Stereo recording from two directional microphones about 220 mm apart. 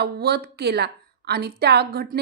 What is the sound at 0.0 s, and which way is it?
A woman's voice, 45° right (ahead or behind).